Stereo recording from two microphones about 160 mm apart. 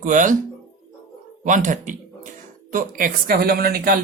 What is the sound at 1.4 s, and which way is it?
A woman's voice, 50° right (ahead or behind).